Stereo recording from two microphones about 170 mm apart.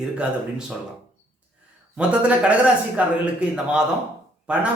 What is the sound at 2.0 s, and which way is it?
Speech, 5° right (ahead or behind).